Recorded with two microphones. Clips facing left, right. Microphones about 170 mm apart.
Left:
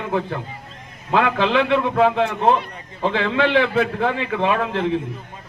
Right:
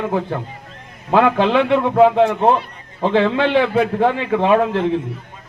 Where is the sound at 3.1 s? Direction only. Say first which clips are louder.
Right 4 dB; 45° right (ahead or behind).